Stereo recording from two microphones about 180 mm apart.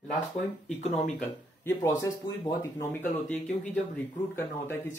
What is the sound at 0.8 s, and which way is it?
Speech, 35° left (ahead or behind).